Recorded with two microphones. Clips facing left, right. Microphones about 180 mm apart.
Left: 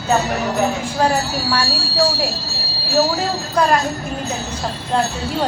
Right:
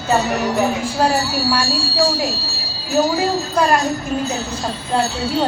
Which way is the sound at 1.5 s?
10° right (ahead or behind).